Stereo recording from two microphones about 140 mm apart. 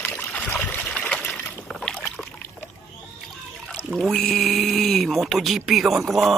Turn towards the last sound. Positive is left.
turn(degrees=0)  # may be behind; listen again after turning